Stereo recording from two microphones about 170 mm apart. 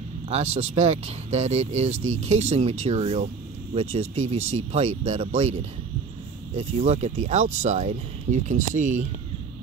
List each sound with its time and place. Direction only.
0.3 s speech: 40° right (ahead or behind)